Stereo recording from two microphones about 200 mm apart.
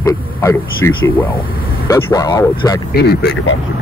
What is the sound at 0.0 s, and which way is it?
Speech, 10° left (ahead or behind).